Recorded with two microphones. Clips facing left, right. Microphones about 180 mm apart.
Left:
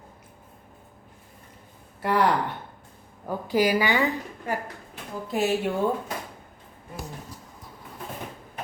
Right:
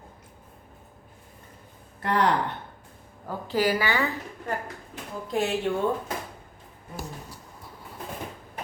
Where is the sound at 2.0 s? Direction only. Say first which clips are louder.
Left 1 dB; 10° left (ahead or behind).